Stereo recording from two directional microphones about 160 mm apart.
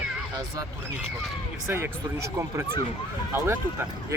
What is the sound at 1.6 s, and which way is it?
Speech, 15° right (ahead or behind).